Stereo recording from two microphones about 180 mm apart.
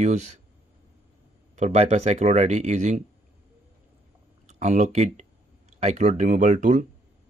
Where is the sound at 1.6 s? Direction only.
40° right (ahead or behind).